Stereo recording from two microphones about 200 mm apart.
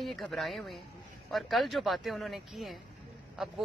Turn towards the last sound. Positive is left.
turn(degrees=0)  # may be behind; listen again after turning